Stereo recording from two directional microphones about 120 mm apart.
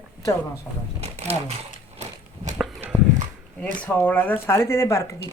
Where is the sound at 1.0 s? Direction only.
65° right (ahead or behind).